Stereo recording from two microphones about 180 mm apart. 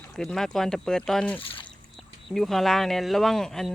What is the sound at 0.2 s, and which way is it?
Speech, 5° left (ahead or behind).